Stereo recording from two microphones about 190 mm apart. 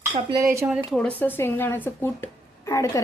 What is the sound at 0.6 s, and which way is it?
A woman's voice, 5° right (ahead or behind).